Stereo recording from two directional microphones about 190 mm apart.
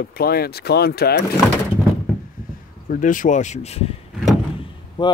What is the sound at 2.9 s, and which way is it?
Speech, 45° left (ahead or behind).